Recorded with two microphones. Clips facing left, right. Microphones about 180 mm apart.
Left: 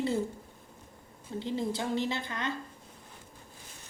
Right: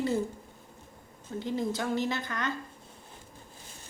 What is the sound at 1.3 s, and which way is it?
A woman's voice, 25° left (ahead or behind).